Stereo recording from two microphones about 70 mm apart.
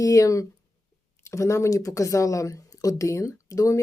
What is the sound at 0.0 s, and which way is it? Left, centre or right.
Speech, left.